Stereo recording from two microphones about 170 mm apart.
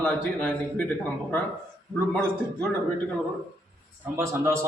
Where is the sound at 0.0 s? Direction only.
5° left (ahead or behind).